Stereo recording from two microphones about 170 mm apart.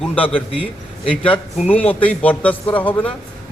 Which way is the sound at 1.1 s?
30° left (ahead or behind).